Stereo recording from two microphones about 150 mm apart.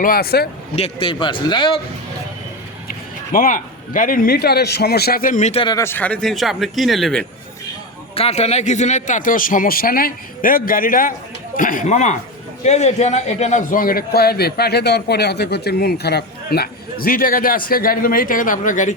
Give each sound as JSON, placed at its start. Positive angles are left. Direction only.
{"t": 0.0, "sound": "speech", "side_deg": 85}
{"t": 0.8, "sound": "a man's voice", "side_deg": 40}
{"t": 3.3, "sound": "a man's voice", "side_deg": 65}
{"t": 5.6, "sound": "speech", "side_deg": 20}
{"t": 8.1, "sound": "a man's voice", "side_deg": 45}